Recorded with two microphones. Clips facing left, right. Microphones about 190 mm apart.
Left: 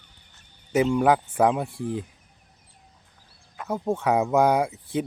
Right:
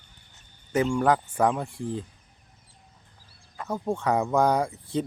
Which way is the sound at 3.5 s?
5° left (ahead or behind).